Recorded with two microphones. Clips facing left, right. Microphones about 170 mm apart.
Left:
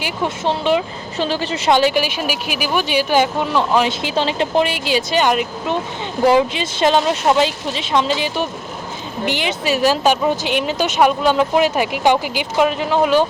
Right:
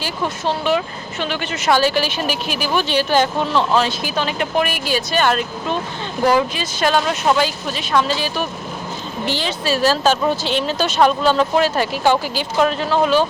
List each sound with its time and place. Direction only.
0.0 s speech: 20° left (ahead or behind)
1.2 s a woman's voice: 35° left (ahead or behind)
1.8 s speech: 15° left (ahead or behind)